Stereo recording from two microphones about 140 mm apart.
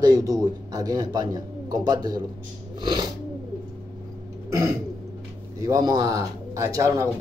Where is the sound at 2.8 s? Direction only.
30° right (ahead or behind).